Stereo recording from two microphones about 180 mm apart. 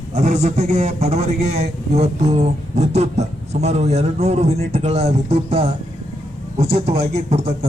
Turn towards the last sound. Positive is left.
turn(degrees=-35)  # may be behind; listen again after turning